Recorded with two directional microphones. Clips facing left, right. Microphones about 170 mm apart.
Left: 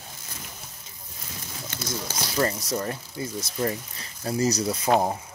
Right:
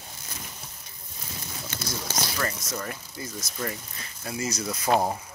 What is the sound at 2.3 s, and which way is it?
Speech, 30° left (ahead or behind).